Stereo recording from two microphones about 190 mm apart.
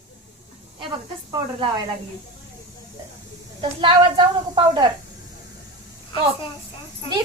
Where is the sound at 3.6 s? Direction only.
25° right (ahead or behind).